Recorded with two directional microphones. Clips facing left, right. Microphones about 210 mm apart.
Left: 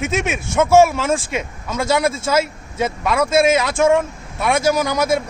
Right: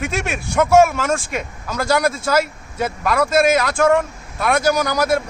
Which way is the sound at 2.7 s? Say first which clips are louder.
Even; centre (ahead or behind).